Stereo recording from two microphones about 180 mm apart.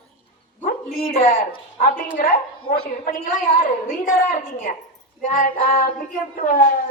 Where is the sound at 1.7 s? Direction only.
50° left (ahead or behind).